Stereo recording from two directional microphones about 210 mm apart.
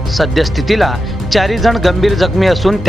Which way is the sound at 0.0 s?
Centre (ahead or behind).